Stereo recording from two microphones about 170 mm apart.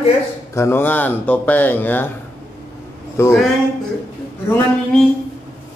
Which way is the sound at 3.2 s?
15° left (ahead or behind).